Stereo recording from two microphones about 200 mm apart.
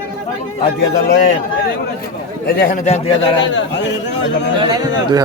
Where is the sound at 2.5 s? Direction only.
50° left (ahead or behind).